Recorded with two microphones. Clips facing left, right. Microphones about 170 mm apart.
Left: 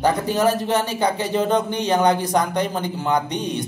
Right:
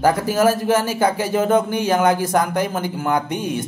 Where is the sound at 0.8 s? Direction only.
5° right (ahead or behind).